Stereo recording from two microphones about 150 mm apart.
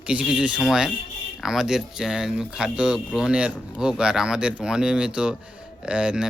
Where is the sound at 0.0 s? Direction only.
5° right (ahead or behind).